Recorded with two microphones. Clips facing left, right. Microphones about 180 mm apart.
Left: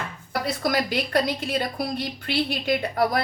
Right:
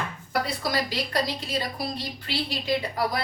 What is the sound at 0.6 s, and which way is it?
A woman's voice, 55° left (ahead or behind).